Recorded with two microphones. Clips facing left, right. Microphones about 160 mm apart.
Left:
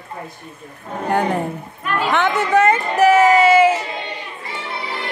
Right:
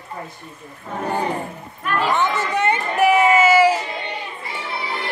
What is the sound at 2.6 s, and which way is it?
Speech, 40° left (ahead or behind).